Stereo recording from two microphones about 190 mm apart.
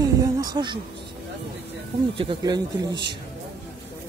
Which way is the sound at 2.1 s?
25° right (ahead or behind).